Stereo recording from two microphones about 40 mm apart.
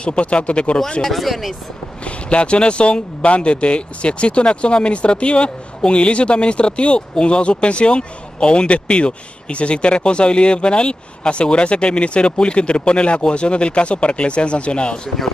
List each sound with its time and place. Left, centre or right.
0.0 s speech: left
1.0 s speech: centre
2.0 s speech: left